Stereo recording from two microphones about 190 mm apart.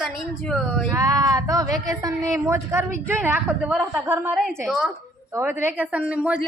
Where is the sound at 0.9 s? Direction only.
20° right (ahead or behind).